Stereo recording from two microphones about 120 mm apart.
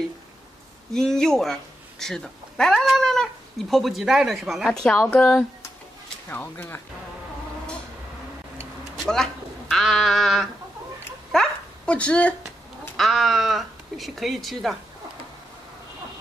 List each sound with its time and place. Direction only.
0.9 s speech: 5° left (ahead or behind)
8.9 s speech: centre (ahead or behind)
11.3 s dog: 10° left (ahead or behind)
12.9 s speech: centre (ahead or behind)